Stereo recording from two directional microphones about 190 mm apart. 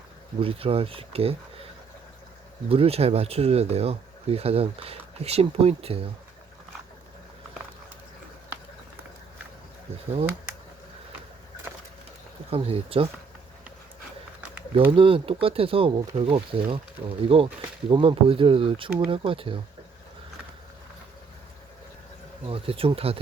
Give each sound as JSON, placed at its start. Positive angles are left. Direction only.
{"t": 0.3, "sound": "speech", "side_deg": -30}
{"t": 2.6, "sound": "speech", "side_deg": -30}
{"t": 12.5, "sound": "speech", "side_deg": -30}
{"t": 14.8, "sound": "speech", "side_deg": -30}
{"t": 22.4, "sound": "speech", "side_deg": -30}